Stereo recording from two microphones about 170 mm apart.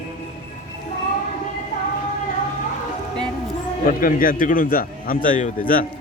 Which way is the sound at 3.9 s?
55° left (ahead or behind).